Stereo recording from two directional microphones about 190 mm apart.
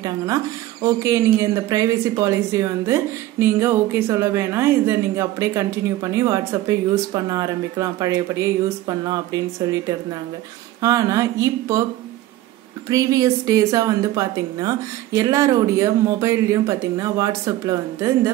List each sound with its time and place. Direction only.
0.8 s speech: 15° right (ahead or behind)
10.8 s speech: 20° right (ahead or behind)
12.8 s speech: 15° right (ahead or behind)